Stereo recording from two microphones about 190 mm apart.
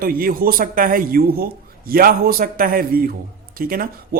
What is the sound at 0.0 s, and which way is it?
Speech, 50° right (ahead or behind).